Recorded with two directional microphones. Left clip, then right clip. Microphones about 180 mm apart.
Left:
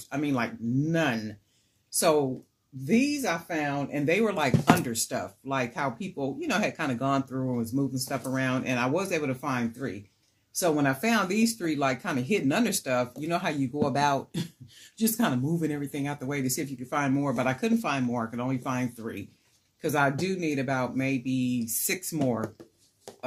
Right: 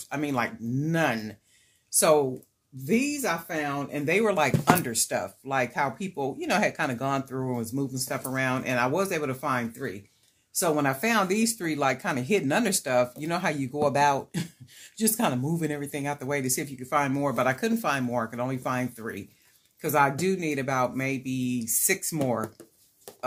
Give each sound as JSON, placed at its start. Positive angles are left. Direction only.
{"t": 0.1, "sound": "speech", "side_deg": -40}